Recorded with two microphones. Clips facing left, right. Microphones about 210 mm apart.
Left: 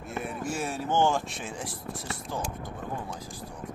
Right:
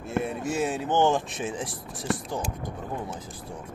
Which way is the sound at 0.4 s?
20° right (ahead or behind).